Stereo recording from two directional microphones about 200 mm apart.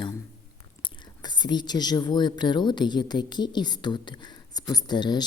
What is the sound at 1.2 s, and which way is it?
A woman's voice, 20° left (ahead or behind).